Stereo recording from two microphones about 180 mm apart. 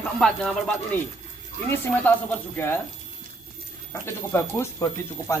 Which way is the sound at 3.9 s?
15° left (ahead or behind).